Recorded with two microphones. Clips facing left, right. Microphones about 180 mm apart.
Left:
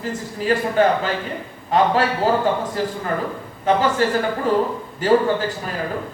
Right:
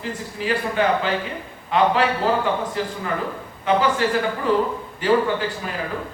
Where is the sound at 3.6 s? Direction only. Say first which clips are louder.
Left 1 dB; 45° left (ahead or behind).